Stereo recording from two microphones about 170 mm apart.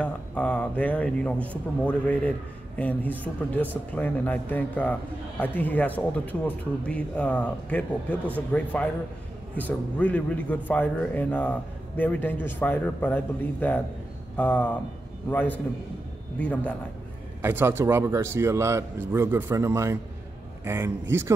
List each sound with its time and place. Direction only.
0.0 s a man's voice: 5° left (ahead or behind)
17.4 s a man's voice: 15° right (ahead or behind)